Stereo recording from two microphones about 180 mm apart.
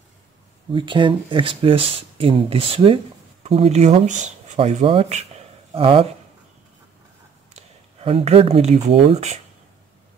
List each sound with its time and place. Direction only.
0.7 s speech: 25° right (ahead or behind)
7.5 s speech: 30° right (ahead or behind)